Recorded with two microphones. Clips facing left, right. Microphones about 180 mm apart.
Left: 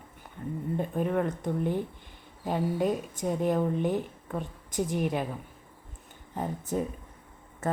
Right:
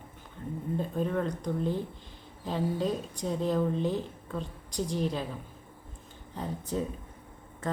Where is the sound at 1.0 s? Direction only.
15° left (ahead or behind).